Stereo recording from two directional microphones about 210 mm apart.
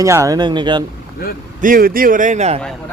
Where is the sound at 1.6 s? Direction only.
40° right (ahead or behind).